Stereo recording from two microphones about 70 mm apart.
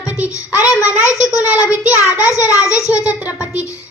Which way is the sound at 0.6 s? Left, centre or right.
Left.